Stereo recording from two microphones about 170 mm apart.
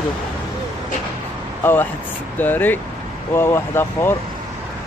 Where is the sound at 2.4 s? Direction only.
10° left (ahead or behind).